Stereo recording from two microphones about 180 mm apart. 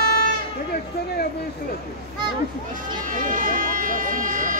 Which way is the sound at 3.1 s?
45° right (ahead or behind).